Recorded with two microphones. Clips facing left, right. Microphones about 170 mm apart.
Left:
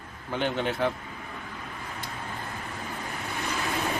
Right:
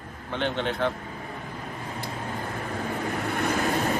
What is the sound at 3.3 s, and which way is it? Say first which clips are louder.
Vehicle: right 5 dB; 55° right (ahead or behind).